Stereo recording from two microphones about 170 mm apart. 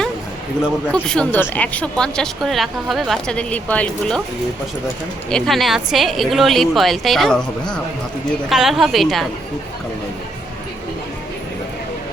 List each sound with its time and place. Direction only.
0.9 s speech: 5° left (ahead or behind)
5.3 s speech: centre (ahead or behind)